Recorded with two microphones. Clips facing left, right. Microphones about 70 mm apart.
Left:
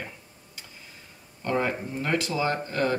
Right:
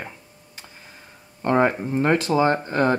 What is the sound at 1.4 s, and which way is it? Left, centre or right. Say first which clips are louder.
Speech: right 7 dB; right.